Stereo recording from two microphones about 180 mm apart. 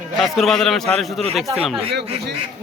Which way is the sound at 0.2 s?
Centre (ahead or behind).